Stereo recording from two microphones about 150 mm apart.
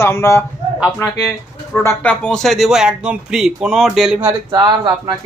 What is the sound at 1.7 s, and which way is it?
Speech, 15° left (ahead or behind).